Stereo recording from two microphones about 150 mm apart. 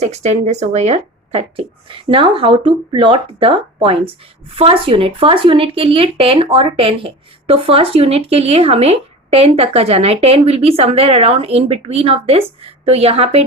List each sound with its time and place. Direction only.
0.0 s speech: 50° right (ahead or behind)